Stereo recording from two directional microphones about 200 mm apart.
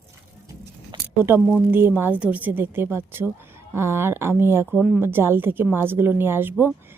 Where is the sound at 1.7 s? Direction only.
10° right (ahead or behind).